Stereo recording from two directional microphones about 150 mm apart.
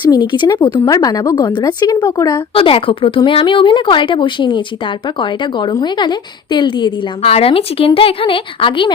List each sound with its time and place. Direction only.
0.0 s a woman's voice: 30° left (ahead or behind)
7.2 s speech: 40° left (ahead or behind)